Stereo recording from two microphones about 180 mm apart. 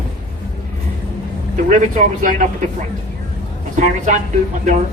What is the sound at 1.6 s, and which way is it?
Speech, 45° right (ahead or behind).